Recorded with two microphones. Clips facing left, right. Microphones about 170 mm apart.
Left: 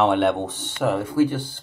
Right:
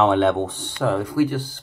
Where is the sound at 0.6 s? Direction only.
20° left (ahead or behind).